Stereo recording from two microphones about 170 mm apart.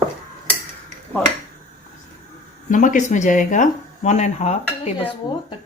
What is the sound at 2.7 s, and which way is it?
Speech, 50° left (ahead or behind).